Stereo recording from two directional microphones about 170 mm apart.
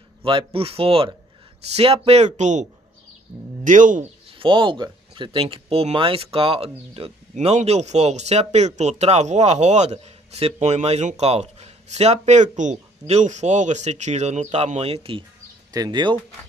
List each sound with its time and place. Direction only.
0.2 s speech: 30° right (ahead or behind); by 4.0 s 50° right (ahead or behind)
4.4 s speech: 30° right (ahead or behind)
15.7 s speech: 25° right (ahead or behind)